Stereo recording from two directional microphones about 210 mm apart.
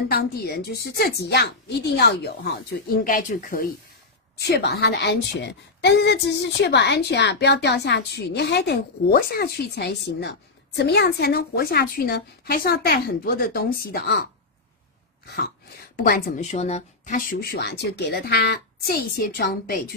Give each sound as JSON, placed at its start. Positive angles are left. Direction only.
{"t": 0.1, "sound": "a woman's voice", "side_deg": 50}
{"t": 3.0, "sound": "speech", "side_deg": 40}
{"t": 4.4, "sound": "a woman's voice", "side_deg": 50}
{"t": 15.2, "sound": "a woman's voice", "side_deg": 50}